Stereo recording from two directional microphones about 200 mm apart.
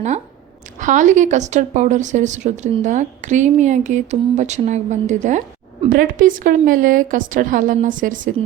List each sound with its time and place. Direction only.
0.8 s speech: 40° right (ahead or behind)